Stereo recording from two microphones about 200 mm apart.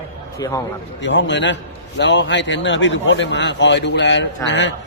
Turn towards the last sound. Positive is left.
turn(degrees=65)  # may be behind; listen again after turning